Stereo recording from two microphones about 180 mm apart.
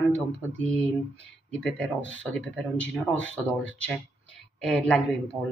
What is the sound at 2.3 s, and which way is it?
Speech, 5° left (ahead or behind).